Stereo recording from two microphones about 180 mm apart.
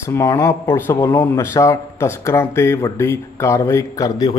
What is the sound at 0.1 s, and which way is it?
Speech, 15° left (ahead or behind).